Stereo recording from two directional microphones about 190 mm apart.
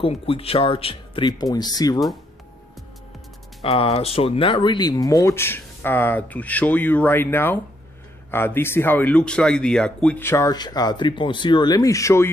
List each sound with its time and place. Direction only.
0.0 s speech: 30° left (ahead or behind)
3.6 s speech: 30° left (ahead or behind); by 12.3 s 15° left (ahead or behind)